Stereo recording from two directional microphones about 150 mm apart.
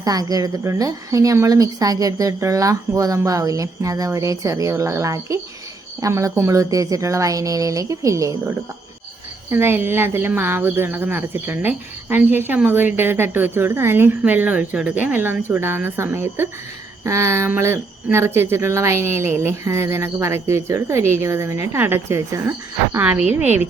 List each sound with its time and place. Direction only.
0.0 s a woman's voice: 25° right (ahead or behind)
9.5 s speech: 15° right (ahead or behind)